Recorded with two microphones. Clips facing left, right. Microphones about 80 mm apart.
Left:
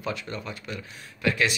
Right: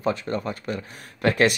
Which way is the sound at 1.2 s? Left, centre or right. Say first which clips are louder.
Right 5 dB; right.